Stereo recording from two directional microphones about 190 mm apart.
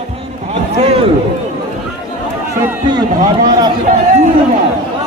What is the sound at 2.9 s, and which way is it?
Speech, 20° right (ahead or behind).